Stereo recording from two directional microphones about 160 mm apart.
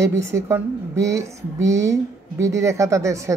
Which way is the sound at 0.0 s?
20° right (ahead or behind).